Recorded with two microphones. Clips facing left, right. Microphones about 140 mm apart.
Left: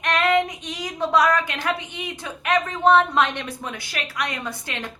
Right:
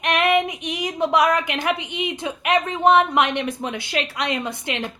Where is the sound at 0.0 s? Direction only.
15° right (ahead or behind).